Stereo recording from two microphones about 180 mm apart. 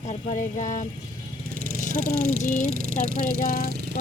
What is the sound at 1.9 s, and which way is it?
Speech, 55° right (ahead or behind).